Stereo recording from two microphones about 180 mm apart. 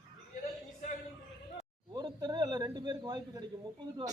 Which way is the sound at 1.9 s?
25° right (ahead or behind).